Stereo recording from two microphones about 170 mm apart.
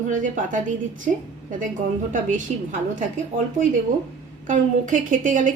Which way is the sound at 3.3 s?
50° right (ahead or behind).